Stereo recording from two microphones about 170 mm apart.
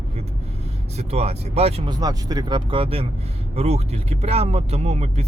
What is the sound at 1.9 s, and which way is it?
Speech, 25° right (ahead or behind).